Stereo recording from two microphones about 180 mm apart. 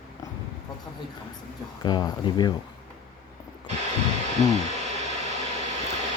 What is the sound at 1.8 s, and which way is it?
Speech, 25° left (ahead or behind).